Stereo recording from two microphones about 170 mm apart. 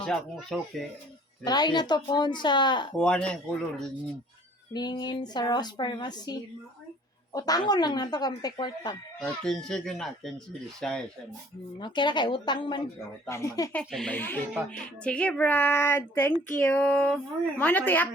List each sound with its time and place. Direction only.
0.0 s speech: centre (ahead or behind)
1.5 s a woman's voice: 25° left (ahead or behind)
3.0 s speech: 5° left (ahead or behind)
4.7 s a woman's voice: 25° left (ahead or behind)
7.3 s a woman's voice: 20° left (ahead or behind)
9.2 s speech: 5° left (ahead or behind)
11.8 s a woman's voice: 25° left (ahead or behind)
13.2 s speech: 15° left (ahead or behind)
13.9 s speech: 5° left (ahead or behind)